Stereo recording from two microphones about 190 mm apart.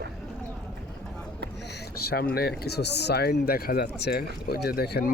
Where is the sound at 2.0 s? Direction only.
55° left (ahead or behind).